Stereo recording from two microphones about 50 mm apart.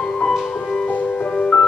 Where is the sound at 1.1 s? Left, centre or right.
Centre.